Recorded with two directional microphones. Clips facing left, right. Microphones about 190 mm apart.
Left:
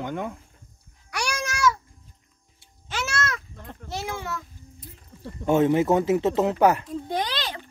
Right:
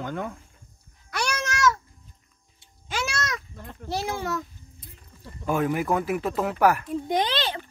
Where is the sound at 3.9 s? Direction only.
35° right (ahead or behind).